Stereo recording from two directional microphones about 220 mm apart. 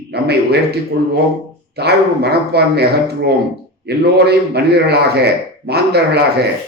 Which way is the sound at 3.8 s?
50° right (ahead or behind).